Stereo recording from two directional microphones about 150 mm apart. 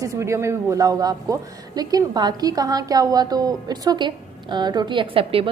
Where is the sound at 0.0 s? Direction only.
20° right (ahead or behind).